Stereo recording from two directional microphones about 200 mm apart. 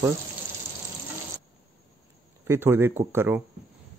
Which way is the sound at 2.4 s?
10° right (ahead or behind).